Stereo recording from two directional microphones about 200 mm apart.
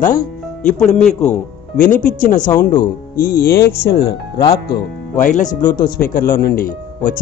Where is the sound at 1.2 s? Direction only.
35° left (ahead or behind); by 4.4 s 55° left (ahead or behind).